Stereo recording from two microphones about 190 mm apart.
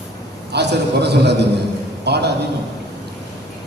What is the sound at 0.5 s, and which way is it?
A man's voice, 60° right (ahead or behind).